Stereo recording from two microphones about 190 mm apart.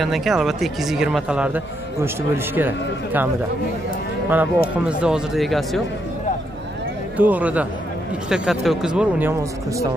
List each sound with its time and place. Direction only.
0.0 s speech: centre (ahead or behind)
4.3 s speech: 5° right (ahead or behind)
7.2 s speech: 10° right (ahead or behind)